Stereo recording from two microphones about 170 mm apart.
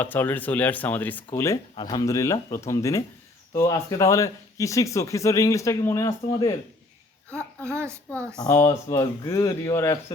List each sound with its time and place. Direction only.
0.0 s speech: 10° left (ahead or behind)
1.7 s speech: 25° left (ahead or behind)
7.3 s a child's voice: 5° left (ahead or behind)
7.7 s a child's voice: 15° right (ahead or behind)
8.4 s speech: 20° left (ahead or behind)